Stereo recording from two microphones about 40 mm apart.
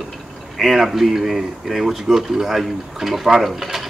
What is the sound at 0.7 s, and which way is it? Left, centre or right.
A man's voice, centre.